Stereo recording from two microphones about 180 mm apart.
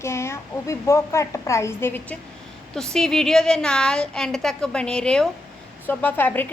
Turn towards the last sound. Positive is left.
turn(degrees=10)  # may be behind; listen again after turning